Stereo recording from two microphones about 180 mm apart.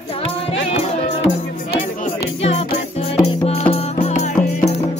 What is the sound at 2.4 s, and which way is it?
Music, 35° left (ahead or behind).